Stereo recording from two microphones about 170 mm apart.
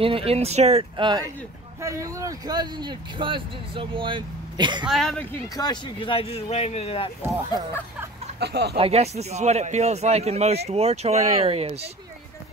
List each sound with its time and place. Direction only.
0.0 s speech: 35° right (ahead or behind)
1.8 s speech: 20° right (ahead or behind)
4.8 s a woman's voice: centre (ahead or behind)
5.3 s speech: 25° left (ahead or behind)
8.4 s speech: 75° right (ahead or behind)
8.7 s speech: 35° right (ahead or behind)